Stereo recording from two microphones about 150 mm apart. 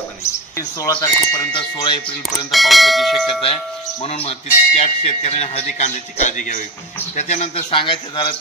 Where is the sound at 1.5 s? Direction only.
30° left (ahead or behind).